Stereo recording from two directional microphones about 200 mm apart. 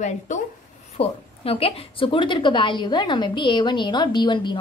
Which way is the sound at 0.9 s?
30° left (ahead or behind).